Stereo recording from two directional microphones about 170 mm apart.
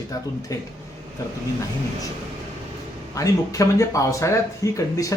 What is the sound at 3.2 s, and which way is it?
Speech, 20° left (ahead or behind).